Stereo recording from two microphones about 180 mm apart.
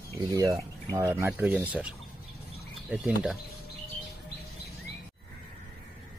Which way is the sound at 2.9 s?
5° right (ahead or behind).